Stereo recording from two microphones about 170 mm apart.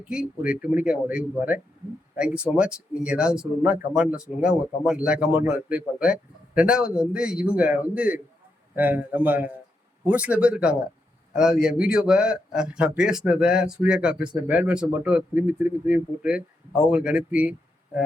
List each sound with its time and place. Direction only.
0.0 s a man's voice: 5° right (ahead or behind)